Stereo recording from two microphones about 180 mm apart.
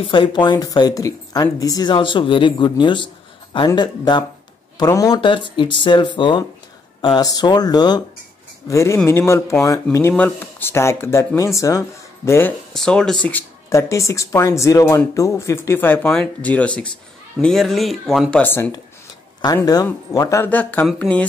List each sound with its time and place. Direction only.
0.0 s speech: 25° left (ahead or behind); by 21.3 s 5° left (ahead or behind)